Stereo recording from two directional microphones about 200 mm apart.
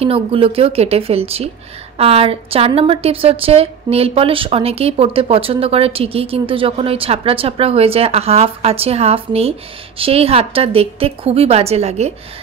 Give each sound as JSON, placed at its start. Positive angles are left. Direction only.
{"t": 0.0, "sound": "a woman's voice", "side_deg": -30}